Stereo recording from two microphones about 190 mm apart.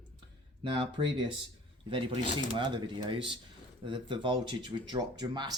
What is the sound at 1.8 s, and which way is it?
Speech, 25° right (ahead or behind).